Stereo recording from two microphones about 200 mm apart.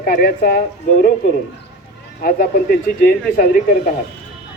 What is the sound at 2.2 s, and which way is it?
Speech, 45° left (ahead or behind).